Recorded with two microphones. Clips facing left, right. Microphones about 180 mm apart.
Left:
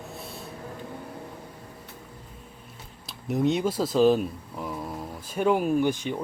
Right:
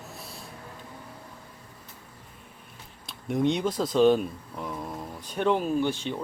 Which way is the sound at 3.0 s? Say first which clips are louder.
Left 1 dB; 5° left (ahead or behind).